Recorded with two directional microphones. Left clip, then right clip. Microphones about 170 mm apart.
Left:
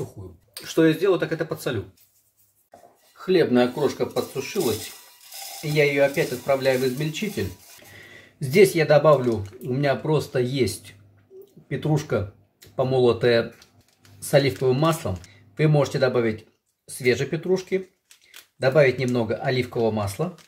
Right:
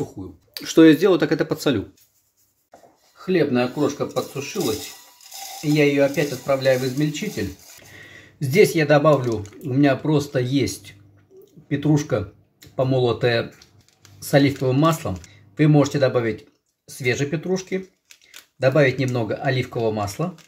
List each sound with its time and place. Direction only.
0.7 s speech: 50° right (ahead or behind)
3.2 s speech: centre (ahead or behind)